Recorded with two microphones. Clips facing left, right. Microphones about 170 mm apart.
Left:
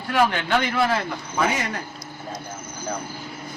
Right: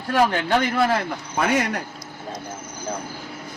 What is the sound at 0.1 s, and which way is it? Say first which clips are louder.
Speech: right 1 dB; 45° right (ahead or behind).